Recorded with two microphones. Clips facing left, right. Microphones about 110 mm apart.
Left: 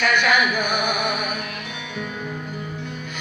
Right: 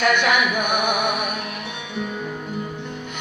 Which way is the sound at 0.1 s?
25° right (ahead or behind).